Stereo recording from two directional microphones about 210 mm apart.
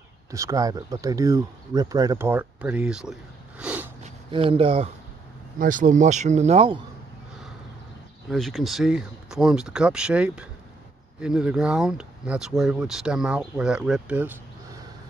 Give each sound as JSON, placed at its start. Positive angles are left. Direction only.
{"t": 0.3, "sound": "speech", "side_deg": -15}
{"t": 4.0, "sound": "a sound", "side_deg": -25}
{"t": 5.6, "sound": "speech", "side_deg": -40}
{"t": 8.3, "sound": "speech", "side_deg": 0}